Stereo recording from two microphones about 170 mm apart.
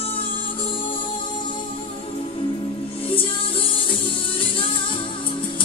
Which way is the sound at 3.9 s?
30° left (ahead or behind).